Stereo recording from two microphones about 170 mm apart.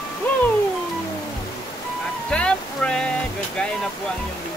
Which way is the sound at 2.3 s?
5° left (ahead or behind).